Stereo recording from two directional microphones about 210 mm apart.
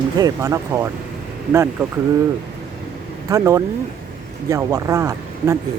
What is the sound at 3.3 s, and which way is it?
Speech, 15° right (ahead or behind).